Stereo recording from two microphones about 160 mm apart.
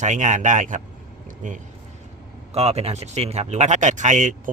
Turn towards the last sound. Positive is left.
turn(degrees=-50)  # may be behind; listen again after turning